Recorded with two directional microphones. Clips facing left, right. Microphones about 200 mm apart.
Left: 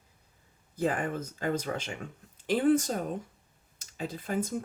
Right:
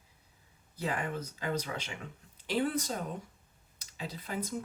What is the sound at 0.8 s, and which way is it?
Speech, 50° left (ahead or behind).